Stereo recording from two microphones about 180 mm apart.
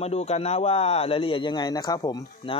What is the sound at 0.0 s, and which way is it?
Speech, 35° left (ahead or behind).